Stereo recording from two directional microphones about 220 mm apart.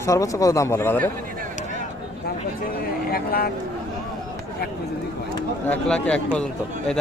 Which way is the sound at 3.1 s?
45° left (ahead or behind).